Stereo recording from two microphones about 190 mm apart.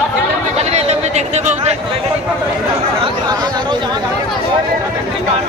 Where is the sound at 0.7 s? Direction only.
35° right (ahead or behind).